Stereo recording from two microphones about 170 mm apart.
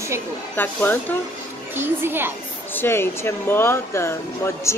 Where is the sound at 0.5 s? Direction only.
10° left (ahead or behind).